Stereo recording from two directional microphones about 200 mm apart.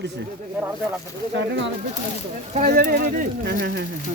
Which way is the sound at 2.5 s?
45° right (ahead or behind).